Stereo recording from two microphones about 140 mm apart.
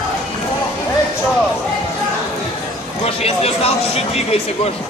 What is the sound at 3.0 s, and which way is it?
Speech, 45° left (ahead or behind).